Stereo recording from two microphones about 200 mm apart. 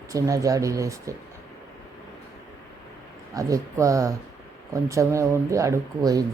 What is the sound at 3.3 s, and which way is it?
Speech, 15° right (ahead or behind).